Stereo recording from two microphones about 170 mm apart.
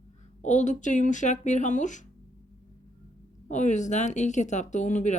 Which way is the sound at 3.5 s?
45° left (ahead or behind).